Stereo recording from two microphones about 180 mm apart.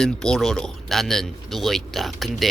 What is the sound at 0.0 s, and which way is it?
Speech, 5° left (ahead or behind).